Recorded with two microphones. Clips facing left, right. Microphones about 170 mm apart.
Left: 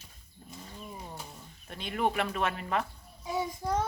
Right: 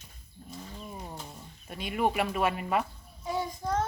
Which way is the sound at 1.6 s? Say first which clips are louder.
Right 2 dB; 10° right (ahead or behind).